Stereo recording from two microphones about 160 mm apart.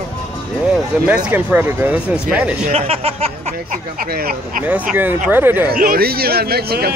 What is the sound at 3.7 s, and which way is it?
Speech, 65° right (ahead or behind).